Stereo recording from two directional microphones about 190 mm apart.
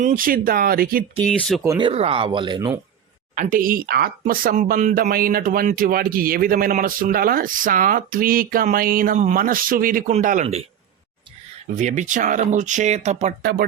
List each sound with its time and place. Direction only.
0.0 s speech: 45° right (ahead or behind)
1.2 s speech: 5° left (ahead or behind)
1.6 s speech: 15° right (ahead or behind)
1.9 s speech: 30° right (ahead or behind)
3.3 s speech: 45° right (ahead or behind)
11.8 s speech: 40° right (ahead or behind)
13.4 s speech: 60° right (ahead or behind)